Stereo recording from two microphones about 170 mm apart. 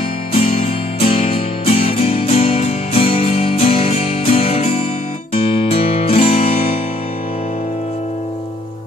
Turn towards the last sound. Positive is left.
turn(degrees=35)  # may be behind; listen again after turning